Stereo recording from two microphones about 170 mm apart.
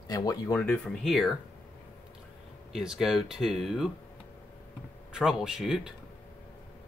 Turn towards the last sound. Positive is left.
turn(degrees=-5)  # may be behind; listen again after turning